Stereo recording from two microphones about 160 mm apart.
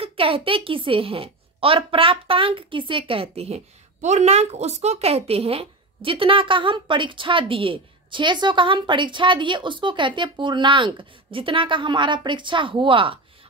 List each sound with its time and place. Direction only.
0.0 s a woman's voice: 35° right (ahead or behind)